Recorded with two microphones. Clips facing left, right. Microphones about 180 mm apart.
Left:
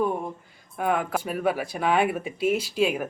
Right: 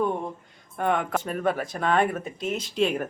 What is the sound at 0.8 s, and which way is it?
Speech, 5° left (ahead or behind).